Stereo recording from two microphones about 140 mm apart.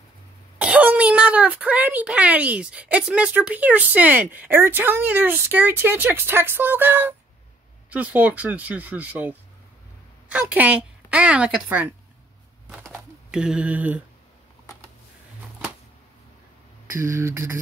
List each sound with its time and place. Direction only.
0.6 s a woman's voice: 10° right (ahead or behind)
12.6 s a sound: 5° right (ahead or behind)
16.9 s beatboxing: 20° right (ahead or behind)